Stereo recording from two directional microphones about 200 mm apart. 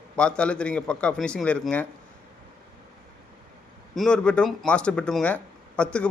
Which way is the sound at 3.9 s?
5° left (ahead or behind).